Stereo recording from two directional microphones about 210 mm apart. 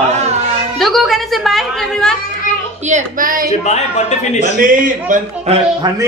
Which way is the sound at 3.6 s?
30° left (ahead or behind).